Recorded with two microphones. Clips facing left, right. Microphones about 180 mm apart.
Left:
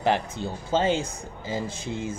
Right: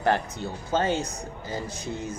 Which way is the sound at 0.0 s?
15° left (ahead or behind).